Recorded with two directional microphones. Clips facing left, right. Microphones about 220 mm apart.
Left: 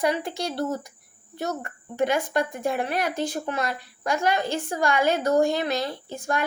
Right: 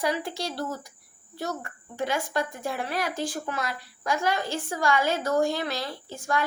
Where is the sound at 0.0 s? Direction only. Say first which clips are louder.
Left 3 dB; 20° left (ahead or behind).